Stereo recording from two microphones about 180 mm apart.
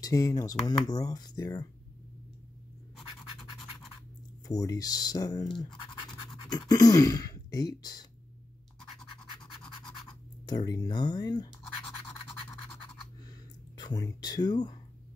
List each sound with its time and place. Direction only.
0.0 s speech: 20° left (ahead or behind)
3.0 s scratch: centre (ahead or behind)
4.5 s speech: 20° left (ahead or behind)
10.4 s speech: 20° left (ahead or behind)
12.1 s scratch: 15° left (ahead or behind)
13.3 s a sound: 25° left (ahead or behind)